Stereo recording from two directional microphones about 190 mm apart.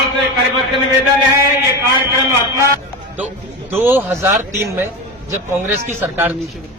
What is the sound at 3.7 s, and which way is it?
Speech, 10° right (ahead or behind).